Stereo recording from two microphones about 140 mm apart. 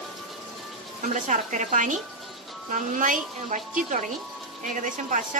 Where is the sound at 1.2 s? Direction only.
60° right (ahead or behind).